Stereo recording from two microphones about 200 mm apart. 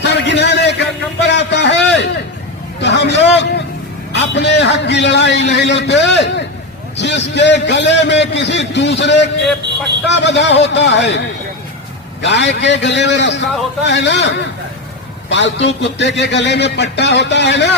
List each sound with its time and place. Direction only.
0.0 s a sound: 60° left (ahead or behind)
2.8 s a man's voice: 60° left (ahead or behind)
12.2 s a man's voice: 60° left (ahead or behind)